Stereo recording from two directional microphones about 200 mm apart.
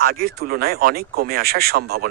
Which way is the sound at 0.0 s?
50° right (ahead or behind).